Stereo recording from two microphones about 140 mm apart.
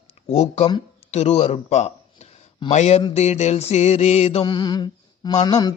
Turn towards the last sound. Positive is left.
turn(degrees=30)  # may be behind; listen again after turning